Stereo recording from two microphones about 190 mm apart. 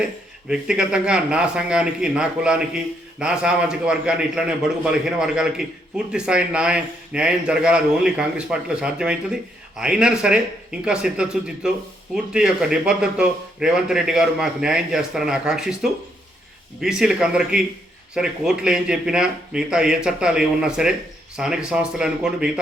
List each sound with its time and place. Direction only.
0.0 s a man's voice: 5° right (ahead or behind)